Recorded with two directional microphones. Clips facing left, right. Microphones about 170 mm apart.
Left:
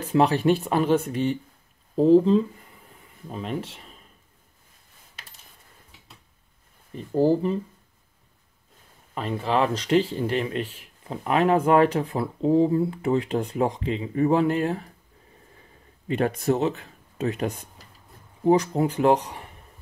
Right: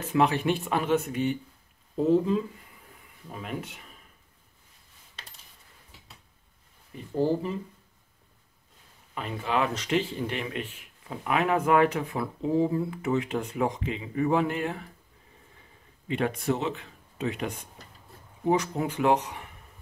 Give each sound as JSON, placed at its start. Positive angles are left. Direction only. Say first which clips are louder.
{"t": 0.1, "sound": "speech", "louder": "left 4 dB", "side_deg": 35}
{"t": 9.1, "sound": "speech", "louder": "left 4 dB", "side_deg": 35}
{"t": 16.1, "sound": "speech", "louder": "left 4 dB", "side_deg": 40}